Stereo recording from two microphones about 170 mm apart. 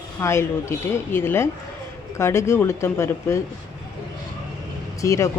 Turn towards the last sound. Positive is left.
turn(degrees=15)  # may be behind; listen again after turning